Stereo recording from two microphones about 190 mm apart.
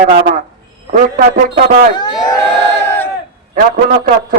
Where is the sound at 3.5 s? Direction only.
45° right (ahead or behind).